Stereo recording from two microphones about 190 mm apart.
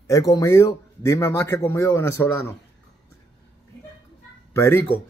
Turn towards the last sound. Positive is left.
turn(degrees=15)  # may be behind; listen again after turning